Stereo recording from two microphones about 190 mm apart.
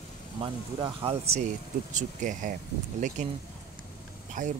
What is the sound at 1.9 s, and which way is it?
Speech, 40° right (ahead or behind).